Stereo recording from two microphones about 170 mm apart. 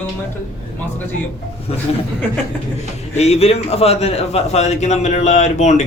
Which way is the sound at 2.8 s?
40° left (ahead or behind).